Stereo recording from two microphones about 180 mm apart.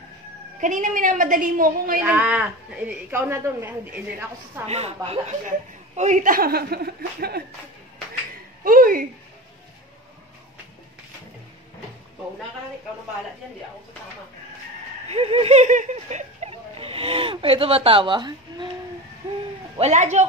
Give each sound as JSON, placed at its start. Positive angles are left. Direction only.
{"t": 0.6, "sound": "a woman's voice", "side_deg": -45}
{"t": 2.0, "sound": "a woman's voice", "side_deg": -10}
{"t": 4.6, "sound": "speech", "side_deg": -35}
{"t": 8.6, "sound": "a sound", "side_deg": -50}
{"t": 15.0, "sound": "speech", "side_deg": -35}
{"t": 19.8, "sound": "speech", "side_deg": -40}